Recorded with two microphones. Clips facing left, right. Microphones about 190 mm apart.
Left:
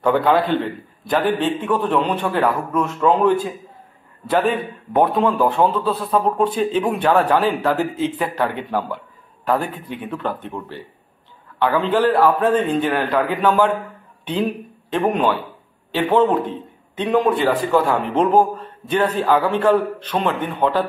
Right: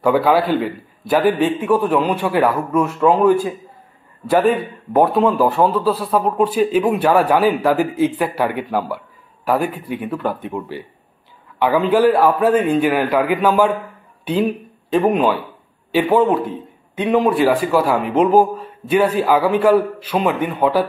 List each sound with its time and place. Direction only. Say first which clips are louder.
0.0 s a man's voice: right 2 dB; 5° right (ahead or behind)
11.9 s a man's voice: right 2 dB; 10° right (ahead or behind)